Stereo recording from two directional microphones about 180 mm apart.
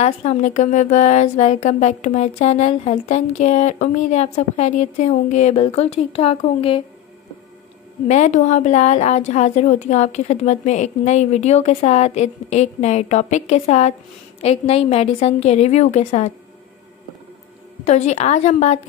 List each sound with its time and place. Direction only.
0.0 s speech: 40° left (ahead or behind)
8.1 s speech: 40° left (ahead or behind)
17.8 s speech: 40° left (ahead or behind)